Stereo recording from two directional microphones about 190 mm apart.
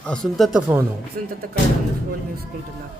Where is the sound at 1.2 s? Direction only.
50° right (ahead or behind).